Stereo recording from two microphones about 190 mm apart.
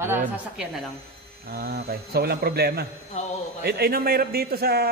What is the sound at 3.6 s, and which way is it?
A man's voice, 55° right (ahead or behind).